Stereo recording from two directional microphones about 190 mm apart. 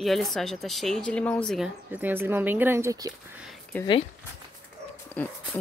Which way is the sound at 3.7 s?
10° left (ahead or behind).